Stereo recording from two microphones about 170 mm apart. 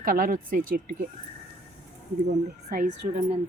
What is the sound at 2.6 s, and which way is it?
Speech, 45° right (ahead or behind).